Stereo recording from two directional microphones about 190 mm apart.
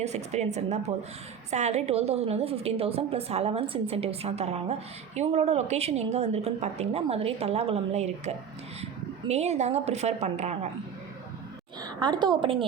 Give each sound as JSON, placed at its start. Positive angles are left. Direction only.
{"t": 0.0, "sound": "a woman's voice", "side_deg": -35}
{"t": 11.8, "sound": "a woman's voice", "side_deg": -20}